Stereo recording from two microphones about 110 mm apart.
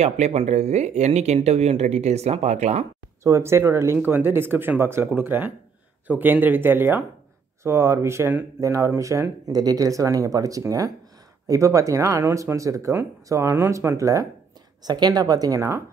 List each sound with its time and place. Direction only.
0.0 s speech: 75° right (ahead or behind)
3.3 s a woman's voice: 25° right (ahead or behind)